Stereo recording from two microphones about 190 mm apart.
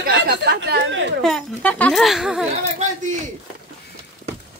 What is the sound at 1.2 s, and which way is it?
Speech, 5° left (ahead or behind).